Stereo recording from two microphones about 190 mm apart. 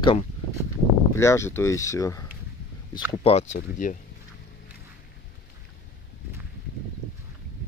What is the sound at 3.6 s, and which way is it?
Speech, 45° left (ahead or behind).